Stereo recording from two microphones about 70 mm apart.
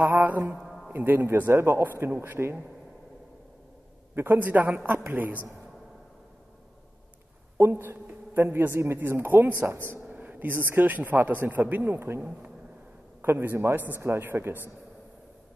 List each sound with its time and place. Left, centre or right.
0.0 s mantra: right
0.6 s a sound: centre
0.9 s speech: right
4.1 s speech: right
7.5 s a man's voice: right